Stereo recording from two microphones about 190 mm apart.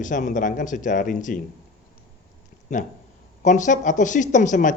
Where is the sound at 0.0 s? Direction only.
40° left (ahead or behind).